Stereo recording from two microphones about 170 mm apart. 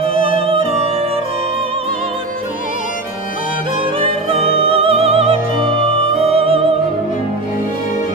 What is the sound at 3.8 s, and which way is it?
Music, 35° right (ahead or behind).